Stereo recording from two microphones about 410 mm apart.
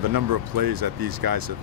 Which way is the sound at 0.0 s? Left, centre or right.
Right.